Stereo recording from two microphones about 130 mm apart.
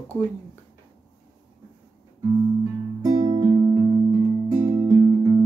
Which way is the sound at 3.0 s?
25° right (ahead or behind).